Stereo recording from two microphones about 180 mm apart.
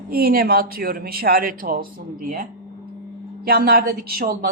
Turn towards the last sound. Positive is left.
turn(degrees=-50)  # may be behind; listen again after turning